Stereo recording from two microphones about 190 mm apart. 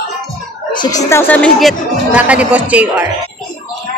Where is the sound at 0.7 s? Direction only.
15° left (ahead or behind); by 3.1 s 5° right (ahead or behind).